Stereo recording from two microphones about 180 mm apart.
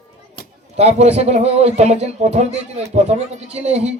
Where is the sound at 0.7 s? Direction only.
35° right (ahead or behind).